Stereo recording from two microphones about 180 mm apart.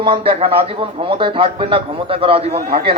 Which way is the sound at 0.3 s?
30° right (ahead or behind).